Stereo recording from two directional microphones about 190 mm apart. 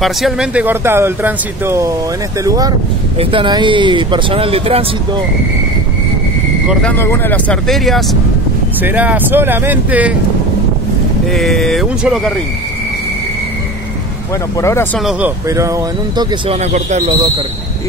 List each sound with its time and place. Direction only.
0.0 s speech: centre (ahead or behind); by 5.2 s 30° right (ahead or behind)
6.8 s speech: 10° left (ahead or behind); by 10.1 s 10° right (ahead or behind)
11.2 s speech: centre (ahead or behind)
14.6 s speech: 15° left (ahead or behind)
15.0 s speech: 5° right (ahead or behind); by 16.5 s 20° right (ahead or behind)
16.5 s speech: 35° right (ahead or behind)